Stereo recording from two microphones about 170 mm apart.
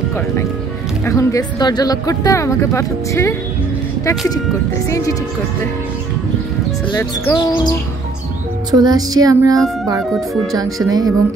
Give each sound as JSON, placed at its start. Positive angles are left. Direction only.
{"t": 1.0, "sound": "speech", "side_deg": 20}
{"t": 4.8, "sound": "speech", "side_deg": 20}
{"t": 6.9, "sound": "speech", "side_deg": 20}
{"t": 8.7, "sound": "child singing", "side_deg": -25}